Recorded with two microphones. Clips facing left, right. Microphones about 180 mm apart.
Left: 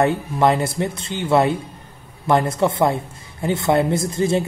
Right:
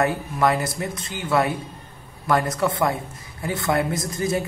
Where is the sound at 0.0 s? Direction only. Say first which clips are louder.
Left 4 dB; 25° left (ahead or behind).